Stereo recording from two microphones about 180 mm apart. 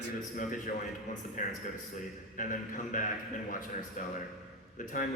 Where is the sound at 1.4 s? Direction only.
45° left (ahead or behind).